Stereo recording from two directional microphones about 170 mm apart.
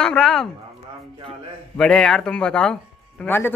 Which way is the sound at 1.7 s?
5° left (ahead or behind).